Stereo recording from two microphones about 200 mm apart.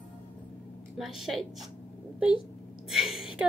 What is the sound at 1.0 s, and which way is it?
Speech, centre (ahead or behind).